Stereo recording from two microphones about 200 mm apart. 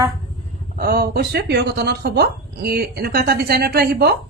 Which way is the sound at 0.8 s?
50° right (ahead or behind).